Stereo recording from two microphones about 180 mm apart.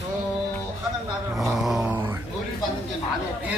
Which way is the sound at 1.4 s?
Centre (ahead or behind).